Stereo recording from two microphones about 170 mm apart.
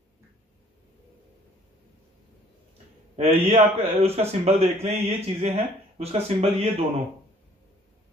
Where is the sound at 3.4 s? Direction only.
40° right (ahead or behind).